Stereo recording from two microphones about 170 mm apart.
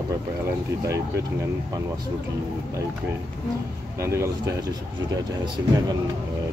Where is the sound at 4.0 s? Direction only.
15° right (ahead or behind).